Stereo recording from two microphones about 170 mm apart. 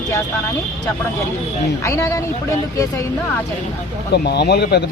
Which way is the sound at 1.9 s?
20° left (ahead or behind).